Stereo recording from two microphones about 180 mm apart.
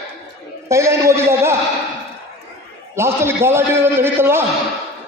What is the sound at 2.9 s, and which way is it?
A man's voice, 15° right (ahead or behind).